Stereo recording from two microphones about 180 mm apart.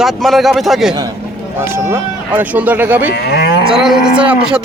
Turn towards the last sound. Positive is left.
turn(degrees=-5)  # may be behind; listen again after turning